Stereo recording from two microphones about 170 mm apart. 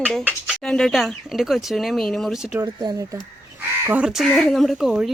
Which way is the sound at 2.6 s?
25° right (ahead or behind).